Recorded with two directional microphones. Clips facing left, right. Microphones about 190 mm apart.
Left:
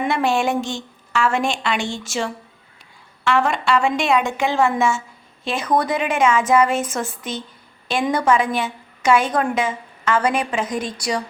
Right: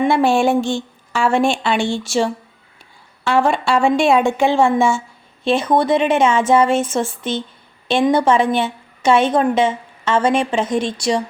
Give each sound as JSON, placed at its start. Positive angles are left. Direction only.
{"t": 0.0, "sound": "a woman's voice", "side_deg": -30}